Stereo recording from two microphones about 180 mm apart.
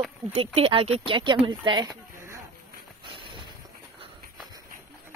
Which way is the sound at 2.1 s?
15° right (ahead or behind).